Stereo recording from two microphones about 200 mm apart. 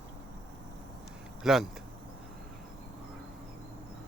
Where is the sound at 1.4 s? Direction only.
Centre (ahead or behind).